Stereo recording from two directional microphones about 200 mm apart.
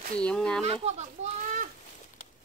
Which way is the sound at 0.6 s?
35° right (ahead or behind).